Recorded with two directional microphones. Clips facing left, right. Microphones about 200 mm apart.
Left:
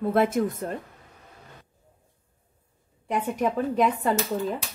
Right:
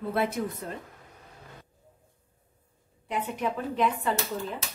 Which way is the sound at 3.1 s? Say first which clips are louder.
Left 5 dB; 45° left (ahead or behind).